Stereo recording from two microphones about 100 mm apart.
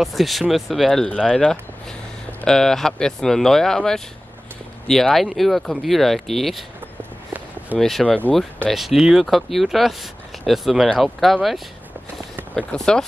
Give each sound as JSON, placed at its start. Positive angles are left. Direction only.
{"t": 0.0, "sound": "speech", "side_deg": 0}
{"t": 7.0, "sound": "walk", "side_deg": -15}
{"t": 7.8, "sound": "speech", "side_deg": 5}
{"t": 12.5, "sound": "speech", "side_deg": 5}